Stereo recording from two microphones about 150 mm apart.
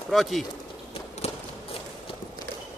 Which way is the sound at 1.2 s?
45° left (ahead or behind).